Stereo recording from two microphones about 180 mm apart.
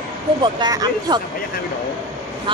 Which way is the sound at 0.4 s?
25° right (ahead or behind).